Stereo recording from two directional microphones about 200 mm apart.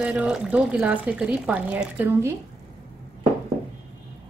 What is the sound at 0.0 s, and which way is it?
A woman's voice, 5° right (ahead or behind).